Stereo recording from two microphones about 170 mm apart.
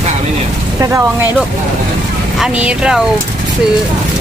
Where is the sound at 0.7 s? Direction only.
15° right (ahead or behind).